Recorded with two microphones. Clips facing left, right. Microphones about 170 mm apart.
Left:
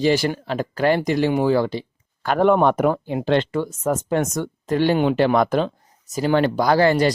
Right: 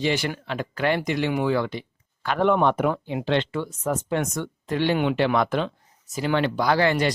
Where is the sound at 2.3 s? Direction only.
45° left (ahead or behind).